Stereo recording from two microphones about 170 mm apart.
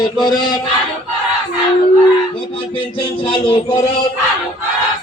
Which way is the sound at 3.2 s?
30° left (ahead or behind).